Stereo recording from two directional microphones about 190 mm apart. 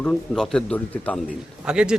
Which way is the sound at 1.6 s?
5° right (ahead or behind).